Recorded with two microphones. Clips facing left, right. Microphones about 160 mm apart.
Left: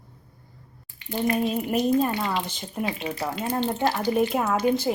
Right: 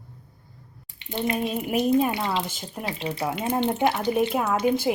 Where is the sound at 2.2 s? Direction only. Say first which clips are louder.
Right 1 dB; 25° right (ahead or behind).